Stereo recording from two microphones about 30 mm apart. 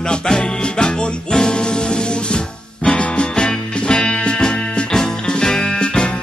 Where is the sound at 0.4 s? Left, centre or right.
Left.